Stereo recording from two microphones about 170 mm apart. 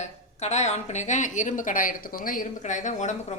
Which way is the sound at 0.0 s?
40° left (ahead or behind).